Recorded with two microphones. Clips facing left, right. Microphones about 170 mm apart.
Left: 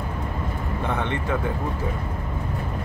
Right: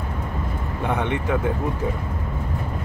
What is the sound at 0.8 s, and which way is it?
Speech, 15° right (ahead or behind).